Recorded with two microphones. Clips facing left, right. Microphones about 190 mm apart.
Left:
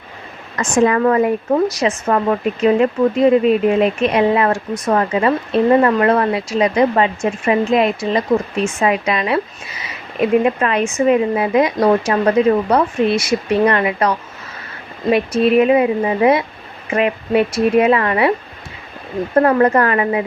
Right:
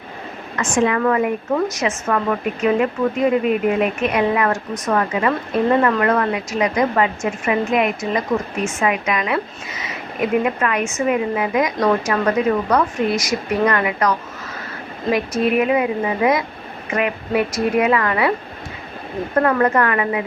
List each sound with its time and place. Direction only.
0.5 s a woman's voice: 35° left (ahead or behind)
19.4 s a woman's voice: 30° left (ahead or behind)